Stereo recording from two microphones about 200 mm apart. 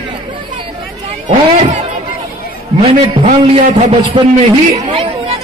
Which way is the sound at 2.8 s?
30° right (ahead or behind).